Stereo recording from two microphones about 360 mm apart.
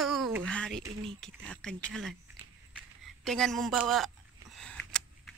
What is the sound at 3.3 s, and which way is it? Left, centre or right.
Speech, centre.